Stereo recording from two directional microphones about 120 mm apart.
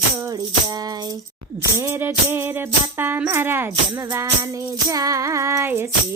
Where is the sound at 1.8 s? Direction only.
20° right (ahead or behind).